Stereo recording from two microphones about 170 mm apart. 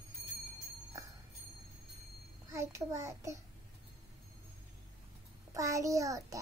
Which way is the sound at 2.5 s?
15° right (ahead or behind).